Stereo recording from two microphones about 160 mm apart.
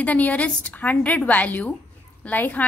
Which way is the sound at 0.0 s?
10° left (ahead or behind).